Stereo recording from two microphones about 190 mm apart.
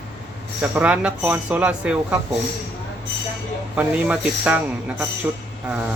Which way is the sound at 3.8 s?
5° right (ahead or behind).